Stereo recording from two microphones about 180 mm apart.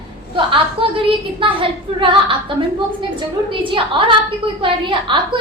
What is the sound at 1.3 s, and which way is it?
Speech, 30° right (ahead or behind).